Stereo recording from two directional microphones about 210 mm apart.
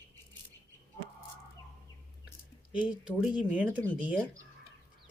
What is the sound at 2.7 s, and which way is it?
Speech, 5° right (ahead or behind).